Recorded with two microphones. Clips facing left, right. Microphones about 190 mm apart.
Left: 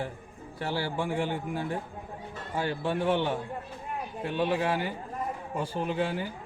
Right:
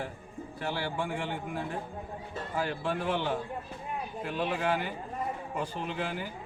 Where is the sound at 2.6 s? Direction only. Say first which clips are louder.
Left 3 dB; 30° left (ahead or behind).